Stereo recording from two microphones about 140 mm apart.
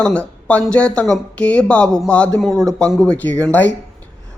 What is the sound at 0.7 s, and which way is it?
A man's voice, 10° left (ahead or behind).